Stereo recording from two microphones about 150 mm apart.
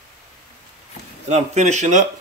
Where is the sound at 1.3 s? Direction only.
50° right (ahead or behind).